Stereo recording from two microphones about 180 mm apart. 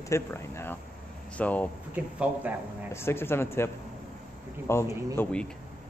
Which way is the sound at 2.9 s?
15° left (ahead or behind).